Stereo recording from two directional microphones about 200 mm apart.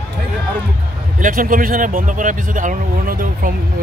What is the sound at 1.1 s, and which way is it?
Speech, 45° right (ahead or behind).